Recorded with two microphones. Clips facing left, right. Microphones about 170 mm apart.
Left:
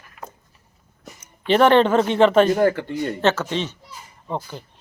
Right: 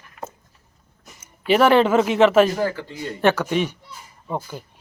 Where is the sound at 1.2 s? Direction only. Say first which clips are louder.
Left 1 dB; 5° right (ahead or behind).